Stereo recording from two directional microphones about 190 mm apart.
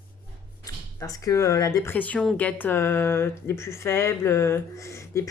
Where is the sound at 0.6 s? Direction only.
20° left (ahead or behind).